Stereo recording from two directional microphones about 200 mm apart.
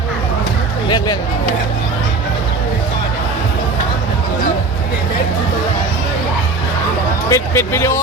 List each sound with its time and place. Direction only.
0.9 s speech: 20° left (ahead or behind)
7.3 s speech: 15° left (ahead or behind)